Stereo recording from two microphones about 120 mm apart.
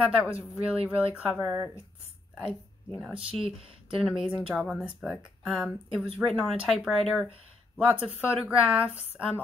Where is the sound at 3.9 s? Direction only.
5° right (ahead or behind).